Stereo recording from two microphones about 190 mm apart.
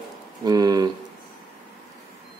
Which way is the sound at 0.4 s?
20° right (ahead or behind).